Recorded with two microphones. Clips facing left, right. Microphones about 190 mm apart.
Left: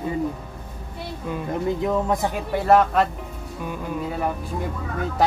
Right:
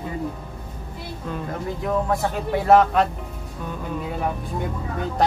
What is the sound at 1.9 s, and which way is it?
Speech, 20° left (ahead or behind).